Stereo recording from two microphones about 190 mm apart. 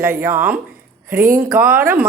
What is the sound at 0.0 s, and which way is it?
Speech, 10° right (ahead or behind).